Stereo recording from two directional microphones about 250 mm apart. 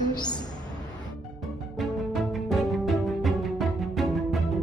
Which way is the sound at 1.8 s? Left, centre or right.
Centre.